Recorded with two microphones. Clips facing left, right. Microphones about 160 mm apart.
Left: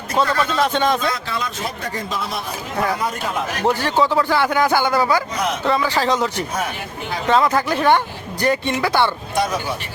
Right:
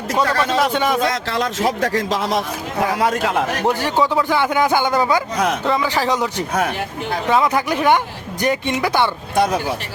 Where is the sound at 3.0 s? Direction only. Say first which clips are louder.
Right 6 dB; 80° right.